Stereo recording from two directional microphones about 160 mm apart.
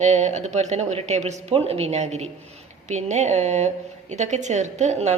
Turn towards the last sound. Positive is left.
turn(degrees=-45)  # may be behind; listen again after turning